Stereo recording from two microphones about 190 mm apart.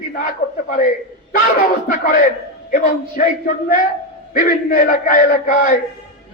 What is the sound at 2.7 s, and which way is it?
Speech, 45° left (ahead or behind).